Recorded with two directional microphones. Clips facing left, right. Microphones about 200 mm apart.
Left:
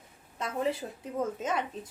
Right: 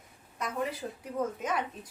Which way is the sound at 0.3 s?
25° left (ahead or behind).